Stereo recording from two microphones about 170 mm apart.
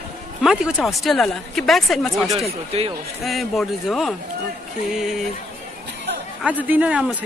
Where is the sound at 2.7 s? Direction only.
35° right (ahead or behind).